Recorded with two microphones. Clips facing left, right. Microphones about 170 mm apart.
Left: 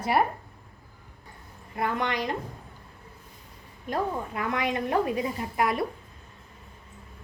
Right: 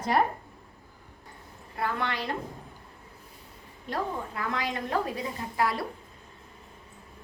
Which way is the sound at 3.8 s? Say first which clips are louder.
Left 3 dB; 20° left (ahead or behind).